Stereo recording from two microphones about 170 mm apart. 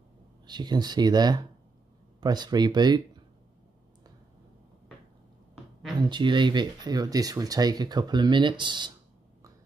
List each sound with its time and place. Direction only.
0.5 s speech: 25° right (ahead or behind)
5.9 s speech: 25° right (ahead or behind)